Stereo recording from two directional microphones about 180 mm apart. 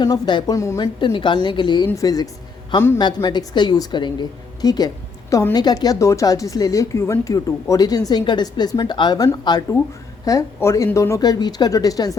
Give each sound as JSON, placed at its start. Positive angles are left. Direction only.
{"t": 0.0, "sound": "speech", "side_deg": 25}